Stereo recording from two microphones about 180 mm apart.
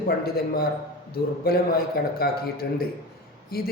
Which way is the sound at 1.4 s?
60° left (ahead or behind).